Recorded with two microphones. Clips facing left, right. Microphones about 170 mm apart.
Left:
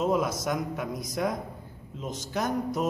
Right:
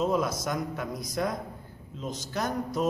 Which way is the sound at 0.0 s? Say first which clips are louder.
Left 1 dB; 15° left (ahead or behind).